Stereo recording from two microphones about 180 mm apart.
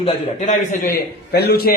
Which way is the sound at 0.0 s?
40° left (ahead or behind).